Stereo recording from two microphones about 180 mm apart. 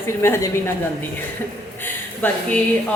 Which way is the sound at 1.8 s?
10° left (ahead or behind).